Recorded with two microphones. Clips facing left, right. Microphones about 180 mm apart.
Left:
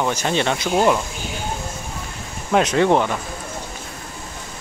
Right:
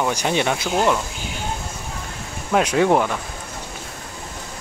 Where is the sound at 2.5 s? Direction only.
5° right (ahead or behind).